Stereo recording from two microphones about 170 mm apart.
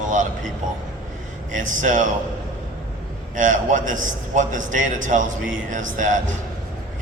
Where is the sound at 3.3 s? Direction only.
50° right (ahead or behind).